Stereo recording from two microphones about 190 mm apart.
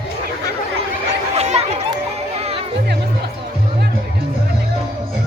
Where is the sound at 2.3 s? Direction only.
35° right (ahead or behind).